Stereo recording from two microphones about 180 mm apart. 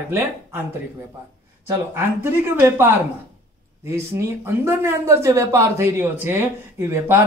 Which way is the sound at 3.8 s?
15° right (ahead or behind).